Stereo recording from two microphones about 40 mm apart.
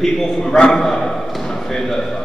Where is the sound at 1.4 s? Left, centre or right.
Centre.